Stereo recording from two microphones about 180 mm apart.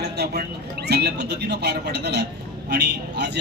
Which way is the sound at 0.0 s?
65° right (ahead or behind).